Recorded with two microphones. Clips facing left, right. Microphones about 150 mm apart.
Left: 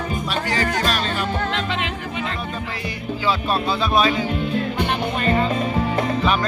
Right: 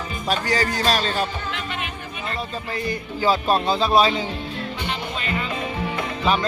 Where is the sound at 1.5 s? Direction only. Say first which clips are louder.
Left 6 dB; 90° left.